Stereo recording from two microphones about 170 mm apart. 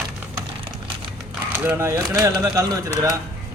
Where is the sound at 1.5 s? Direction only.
15° right (ahead or behind).